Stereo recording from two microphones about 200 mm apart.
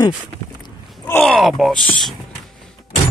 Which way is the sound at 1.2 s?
Centre (ahead or behind).